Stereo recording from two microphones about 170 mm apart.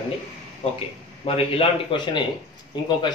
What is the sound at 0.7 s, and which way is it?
Speech, 35° left (ahead or behind).